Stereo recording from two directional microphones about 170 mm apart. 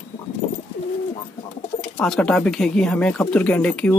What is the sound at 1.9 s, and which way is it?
Speech, 5° left (ahead or behind).